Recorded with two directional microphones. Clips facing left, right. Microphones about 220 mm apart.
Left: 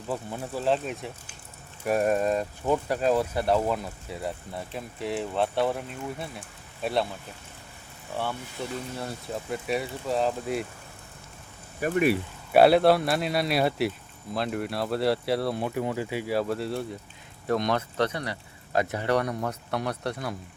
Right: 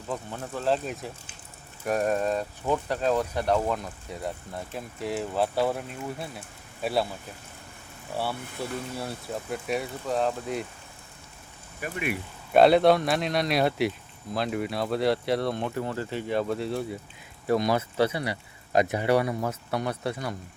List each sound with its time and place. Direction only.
0.1 s speech: 10° left (ahead or behind)
8.1 s speech: 10° right (ahead or behind)
11.8 s speech: 40° left (ahead or behind)
12.5 s speech: 5° left (ahead or behind)